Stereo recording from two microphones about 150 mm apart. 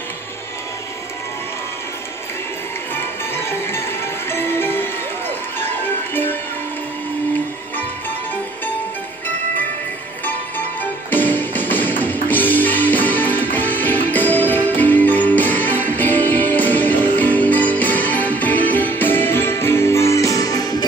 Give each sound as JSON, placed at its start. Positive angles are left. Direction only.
{"t": 3.0, "sound": "music", "side_deg": 15}
{"t": 11.1, "sound": "music", "side_deg": 10}